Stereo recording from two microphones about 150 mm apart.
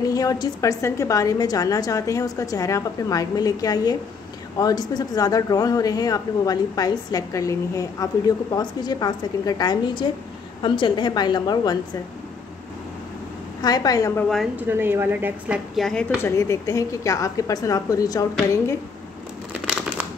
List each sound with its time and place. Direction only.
0.0 s speech: 25° left (ahead or behind)
13.6 s speech: 25° left (ahead or behind)
14.6 s a woman's voice: 15° right (ahead or behind); by 16.1 s 5° left (ahead or behind)
16.2 s speech: 20° left (ahead or behind)
19.5 s crumpling: 10° right (ahead or behind)